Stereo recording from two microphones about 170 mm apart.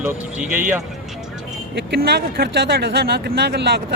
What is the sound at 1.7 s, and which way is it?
Speech, 75° right (ahead or behind).